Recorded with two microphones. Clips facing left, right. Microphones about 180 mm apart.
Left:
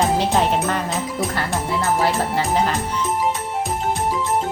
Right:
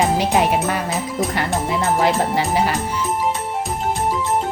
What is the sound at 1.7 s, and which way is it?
Speech, 20° right (ahead or behind).